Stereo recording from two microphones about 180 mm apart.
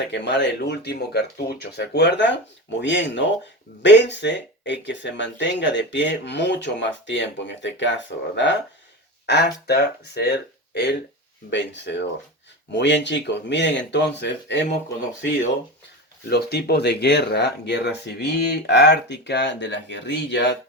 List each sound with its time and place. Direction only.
0.1 s speech: 75° left (ahead or behind)
3.8 s speech: 75° left (ahead or behind)
9.2 s speech: 65° left (ahead or behind)
16.3 s speech: 65° left (ahead or behind)